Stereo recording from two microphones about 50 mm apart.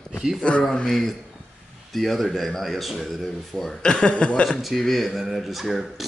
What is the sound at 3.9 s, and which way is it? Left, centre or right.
Speech, centre.